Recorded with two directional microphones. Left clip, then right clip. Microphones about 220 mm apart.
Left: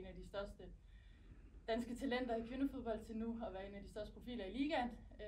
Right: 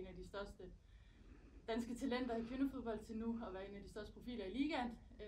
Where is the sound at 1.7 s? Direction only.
5° right (ahead or behind).